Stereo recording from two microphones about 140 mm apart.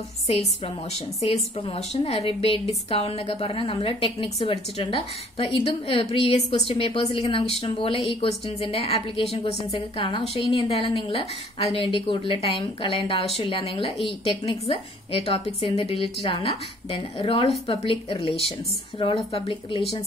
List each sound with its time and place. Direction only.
0.9 s a woman's voice: 50° left (ahead or behind)